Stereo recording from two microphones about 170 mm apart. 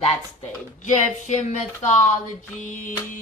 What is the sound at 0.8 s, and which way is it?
Speech, 45° left (ahead or behind).